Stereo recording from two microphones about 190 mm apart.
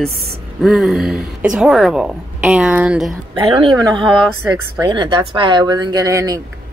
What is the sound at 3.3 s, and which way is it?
Speech, 25° right (ahead or behind).